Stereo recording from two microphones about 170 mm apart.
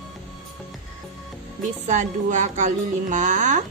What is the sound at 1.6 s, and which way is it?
Speech, 45° right (ahead or behind).